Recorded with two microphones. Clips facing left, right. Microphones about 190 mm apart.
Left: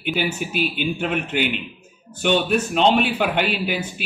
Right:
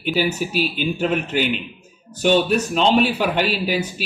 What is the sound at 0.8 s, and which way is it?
Speech, 40° right (ahead or behind).